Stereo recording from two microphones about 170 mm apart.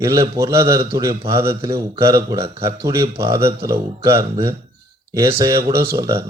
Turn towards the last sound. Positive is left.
turn(degrees=-20)  # may be behind; listen again after turning